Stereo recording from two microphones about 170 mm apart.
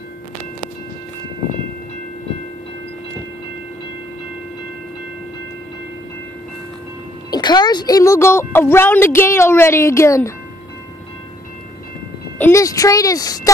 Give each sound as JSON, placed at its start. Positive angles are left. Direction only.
{"t": 7.2, "sound": "speech", "side_deg": 25}
{"t": 12.4, "sound": "speech", "side_deg": 15}